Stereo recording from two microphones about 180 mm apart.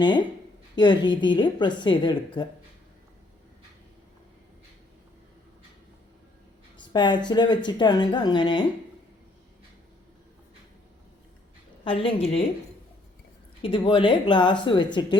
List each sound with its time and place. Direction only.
0.8 s a woman's voice: 25° left (ahead or behind)
6.7 s a woman's voice: 25° left (ahead or behind)
11.9 s a woman's voice: 30° left (ahead or behind)
13.6 s a woman's voice: 25° left (ahead or behind)